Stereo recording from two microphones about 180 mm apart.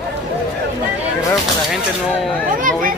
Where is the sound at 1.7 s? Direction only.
5° right (ahead or behind).